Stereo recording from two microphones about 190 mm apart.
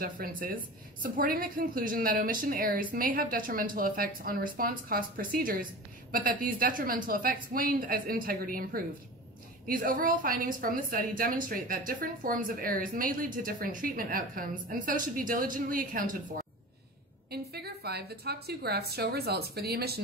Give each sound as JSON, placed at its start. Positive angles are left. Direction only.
{"t": 0.0, "sound": "a woman's voice", "side_deg": -45}
{"t": 17.3, "sound": "a woman's voice", "side_deg": -55}